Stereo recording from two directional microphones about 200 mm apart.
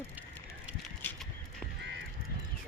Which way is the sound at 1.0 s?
5° left (ahead or behind).